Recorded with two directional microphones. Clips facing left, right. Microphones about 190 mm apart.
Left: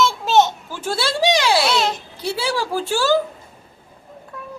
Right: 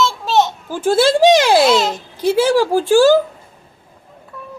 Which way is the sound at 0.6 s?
45° right (ahead or behind).